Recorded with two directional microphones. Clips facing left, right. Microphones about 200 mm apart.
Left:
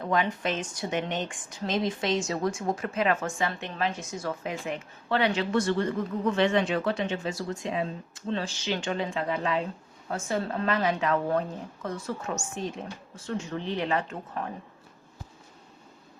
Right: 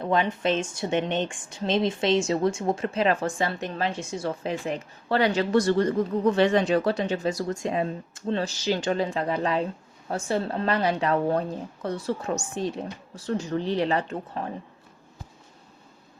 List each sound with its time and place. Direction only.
0.0 s speech: 25° right (ahead or behind)